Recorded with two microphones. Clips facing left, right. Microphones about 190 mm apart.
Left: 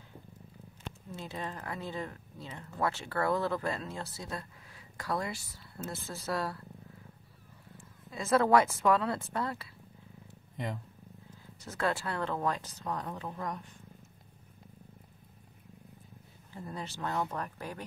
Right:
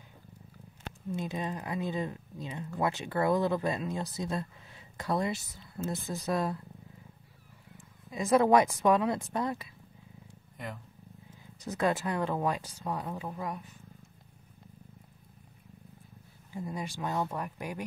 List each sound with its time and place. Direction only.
1.1 s speech: 15° right (ahead or behind)
8.1 s speech: 15° right (ahead or behind)
11.6 s speech: 15° right (ahead or behind)
16.5 s speech: 10° right (ahead or behind)